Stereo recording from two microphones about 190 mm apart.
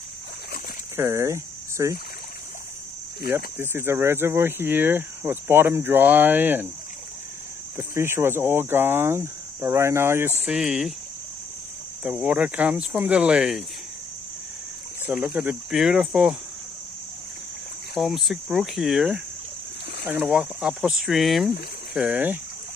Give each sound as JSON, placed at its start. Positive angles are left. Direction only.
{"t": 0.9, "sound": "speech", "side_deg": -15}
{"t": 3.3, "sound": "speech", "side_deg": -10}
{"t": 7.7, "sound": "speech", "side_deg": -15}
{"t": 12.0, "sound": "speech", "side_deg": -5}
{"t": 15.0, "sound": "speech", "side_deg": -5}
{"t": 17.9, "sound": "speech", "side_deg": 0}